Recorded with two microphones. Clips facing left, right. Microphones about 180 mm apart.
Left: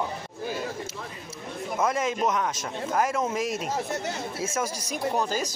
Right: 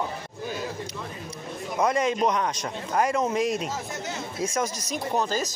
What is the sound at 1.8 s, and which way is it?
A man's voice, 5° left (ahead or behind).